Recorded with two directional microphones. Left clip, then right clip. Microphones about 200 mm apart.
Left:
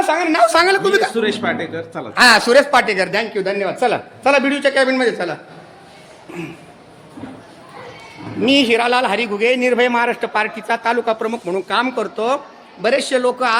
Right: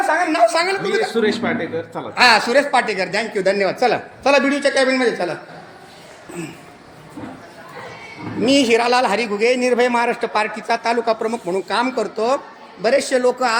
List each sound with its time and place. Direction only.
0.1 s a woman's voice: 35° left (ahead or behind)
1.1 s speech: 20° left (ahead or behind)
3.3 s speech: 10° right (ahead or behind)
3.8 s a man's voice: 5° left (ahead or behind)
8.4 s a man's voice: centre (ahead or behind)